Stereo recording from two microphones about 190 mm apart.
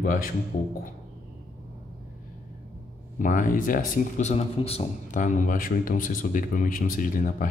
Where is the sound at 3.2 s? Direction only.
45° left (ahead or behind).